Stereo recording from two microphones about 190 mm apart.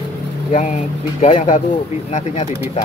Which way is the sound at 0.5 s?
40° left (ahead or behind).